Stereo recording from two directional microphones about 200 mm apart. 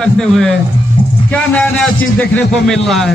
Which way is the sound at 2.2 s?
5° left (ahead or behind).